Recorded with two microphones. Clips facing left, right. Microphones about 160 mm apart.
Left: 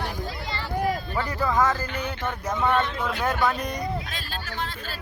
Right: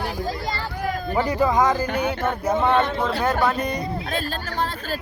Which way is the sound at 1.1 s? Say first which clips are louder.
Right 5 dB; 20° right (ahead or behind).